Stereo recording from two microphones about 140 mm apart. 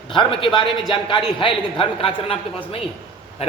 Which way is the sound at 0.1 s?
40° left (ahead or behind).